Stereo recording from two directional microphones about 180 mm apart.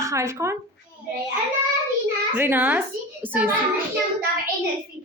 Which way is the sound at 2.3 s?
10° right (ahead or behind).